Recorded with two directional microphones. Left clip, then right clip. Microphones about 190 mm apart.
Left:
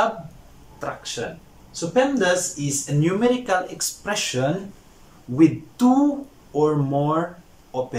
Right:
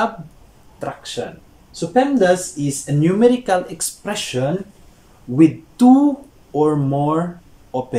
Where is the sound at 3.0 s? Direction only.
25° right (ahead or behind).